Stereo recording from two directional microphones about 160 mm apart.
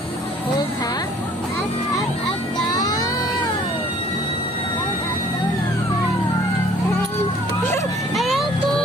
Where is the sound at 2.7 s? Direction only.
25° left (ahead or behind).